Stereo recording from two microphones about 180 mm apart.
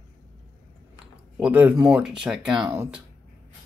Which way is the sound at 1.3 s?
5° right (ahead or behind).